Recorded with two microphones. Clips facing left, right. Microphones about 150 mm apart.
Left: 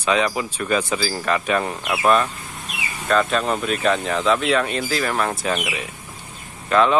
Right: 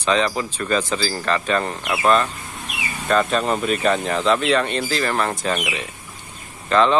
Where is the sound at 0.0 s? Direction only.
10° left (ahead or behind).